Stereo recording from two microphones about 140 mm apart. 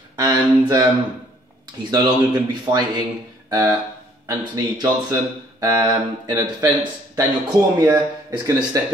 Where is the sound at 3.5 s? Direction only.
25° right (ahead or behind).